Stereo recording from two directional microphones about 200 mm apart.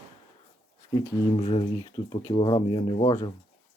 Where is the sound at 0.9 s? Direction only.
20° left (ahead or behind).